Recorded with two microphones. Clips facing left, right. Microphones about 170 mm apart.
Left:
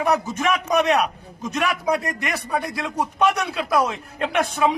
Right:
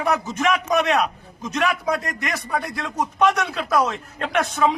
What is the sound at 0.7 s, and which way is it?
A man's voice, 15° left (ahead or behind).